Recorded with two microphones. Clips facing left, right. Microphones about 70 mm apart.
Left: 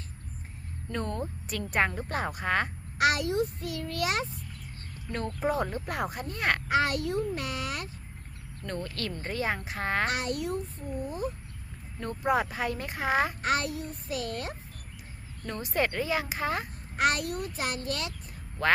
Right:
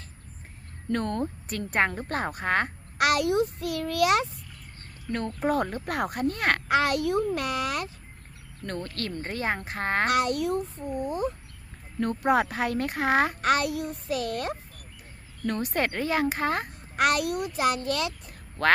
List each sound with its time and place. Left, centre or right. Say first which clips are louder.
0.9 s speech: right 5 dB; right
1.2 s a woman's voice: right 4 dB; right
3.0 s a child's voice: right 3 dB; right
5.7 s speech: right 3 dB; right
8.6 s a woman's voice: right 2 dB; right
10.1 s a child's voice: right 6 dB; right
11.0 s speech: right 5 dB; right
11.9 s speech: right 4 dB; right
15.4 s a woman's voice: right 2 dB; right
17.0 s speech: right 3 dB; right
18.6 s speech: right 3 dB; right